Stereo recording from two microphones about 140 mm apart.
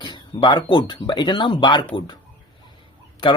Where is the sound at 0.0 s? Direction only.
35° left (ahead or behind).